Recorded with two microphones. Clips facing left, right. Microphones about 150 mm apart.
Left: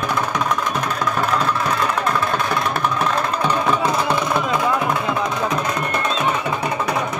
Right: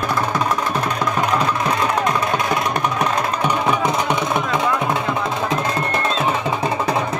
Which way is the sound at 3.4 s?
15° right (ahead or behind).